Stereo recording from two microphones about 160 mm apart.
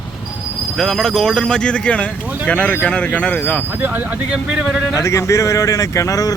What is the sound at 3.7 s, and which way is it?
Speech, 10° right (ahead or behind).